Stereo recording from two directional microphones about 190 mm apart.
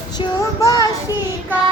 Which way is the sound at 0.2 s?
20° left (ahead or behind).